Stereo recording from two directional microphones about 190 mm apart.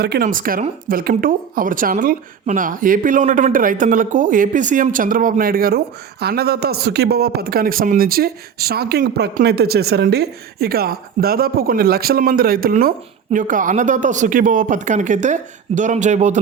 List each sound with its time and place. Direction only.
0.0 s speech: 55° right (ahead or behind); by 16.4 s 40° right (ahead or behind)